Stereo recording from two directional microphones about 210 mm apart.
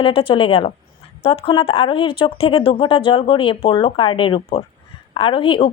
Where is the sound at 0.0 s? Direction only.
25° left (ahead or behind).